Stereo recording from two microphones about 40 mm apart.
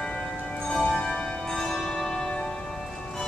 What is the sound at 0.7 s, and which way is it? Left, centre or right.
Music, left.